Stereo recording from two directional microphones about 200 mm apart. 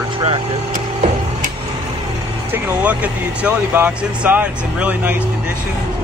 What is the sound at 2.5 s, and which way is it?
Speech, 10° right (ahead or behind).